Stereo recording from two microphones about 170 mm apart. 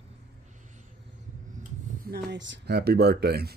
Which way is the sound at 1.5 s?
50° right (ahead or behind).